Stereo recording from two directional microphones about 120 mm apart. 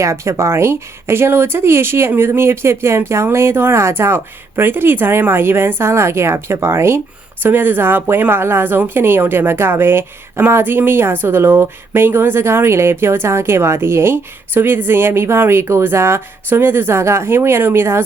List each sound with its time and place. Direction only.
0.0 s speech: 25° right (ahead or behind)